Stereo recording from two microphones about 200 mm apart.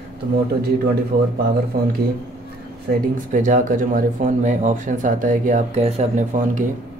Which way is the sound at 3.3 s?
40° right (ahead or behind).